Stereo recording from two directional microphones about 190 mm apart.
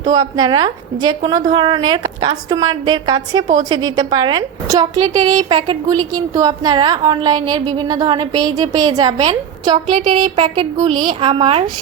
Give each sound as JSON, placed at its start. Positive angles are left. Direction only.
{"t": 0.1, "sound": "a woman's voice", "side_deg": -20}